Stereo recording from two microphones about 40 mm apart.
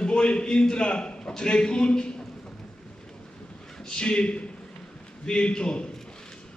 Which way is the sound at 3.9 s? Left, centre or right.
Left.